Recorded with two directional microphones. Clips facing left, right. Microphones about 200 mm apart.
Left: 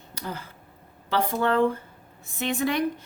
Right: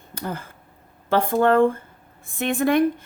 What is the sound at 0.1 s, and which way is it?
Speech, 50° right (ahead or behind).